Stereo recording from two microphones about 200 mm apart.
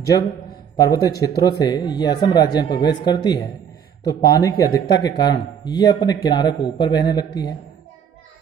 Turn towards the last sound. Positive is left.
turn(degrees=20)  # may be behind; listen again after turning